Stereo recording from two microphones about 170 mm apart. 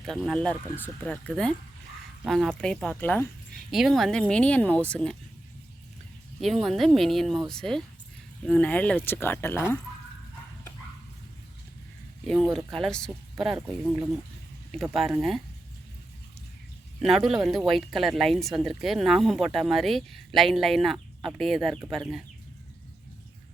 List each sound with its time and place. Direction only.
0.0 s speech: centre (ahead or behind)
3.7 s speech: centre (ahead or behind)
6.4 s speech: centre (ahead or behind)
12.2 s speech: centre (ahead or behind)
17.0 s speech: centre (ahead or behind)